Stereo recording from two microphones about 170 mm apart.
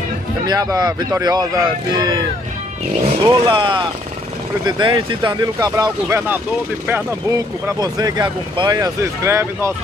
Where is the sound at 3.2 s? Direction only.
25° right (ahead or behind).